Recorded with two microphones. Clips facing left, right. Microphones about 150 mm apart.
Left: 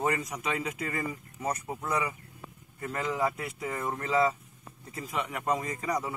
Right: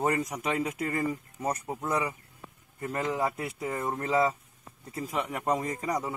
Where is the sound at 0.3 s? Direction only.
45° right (ahead or behind); by 4.4 s 30° right (ahead or behind).